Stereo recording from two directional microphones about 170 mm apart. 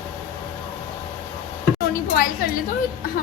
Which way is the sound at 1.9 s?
55° left (ahead or behind).